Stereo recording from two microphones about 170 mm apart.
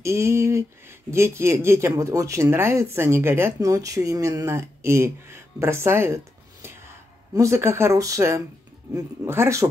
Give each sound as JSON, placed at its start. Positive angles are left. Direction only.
{"t": 0.0, "sound": "speech", "side_deg": -15}